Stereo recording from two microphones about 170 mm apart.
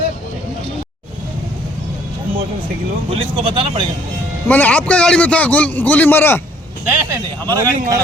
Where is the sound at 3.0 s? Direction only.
30° right (ahead or behind).